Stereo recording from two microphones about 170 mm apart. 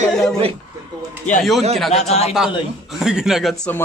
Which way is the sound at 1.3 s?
45° left (ahead or behind).